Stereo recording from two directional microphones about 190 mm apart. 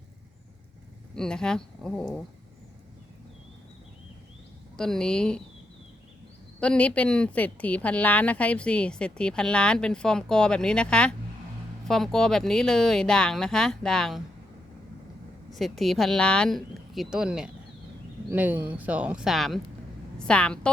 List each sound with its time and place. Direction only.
1.1 s a woman's voice: 5° left (ahead or behind)
4.8 s a woman's voice: 5° left (ahead or behind)
6.6 s a woman's voice: 5° left (ahead or behind)
15.5 s a woman's voice: centre (ahead or behind)